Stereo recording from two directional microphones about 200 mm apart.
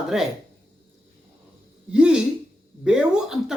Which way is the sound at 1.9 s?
5° right (ahead or behind).